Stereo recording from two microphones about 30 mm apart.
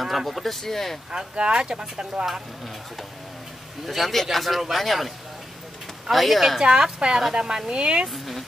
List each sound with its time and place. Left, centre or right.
0.0 s a man's voice: centre
0.5 s speech: centre
1.1 s speech: right
3.8 s a man's voice: centre
6.1 s a man's voice: centre
7.0 s speech: right
7.3 s speech: right
8.1 s a sound: centre